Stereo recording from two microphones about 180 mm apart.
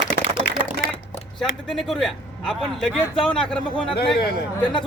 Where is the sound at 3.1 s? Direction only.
30° left (ahead or behind).